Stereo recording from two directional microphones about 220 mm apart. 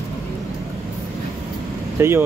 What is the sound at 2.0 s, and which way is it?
Speech, 10° right (ahead or behind).